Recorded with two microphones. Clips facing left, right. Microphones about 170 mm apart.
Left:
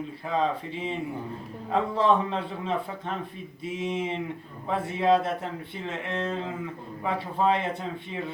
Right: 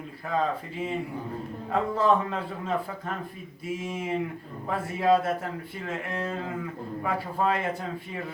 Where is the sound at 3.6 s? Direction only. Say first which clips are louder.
Left 2 dB; 25° left (ahead or behind).